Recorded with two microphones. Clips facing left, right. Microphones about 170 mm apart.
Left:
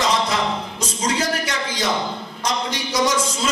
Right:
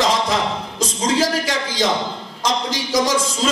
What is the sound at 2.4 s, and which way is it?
Speech, 90° right.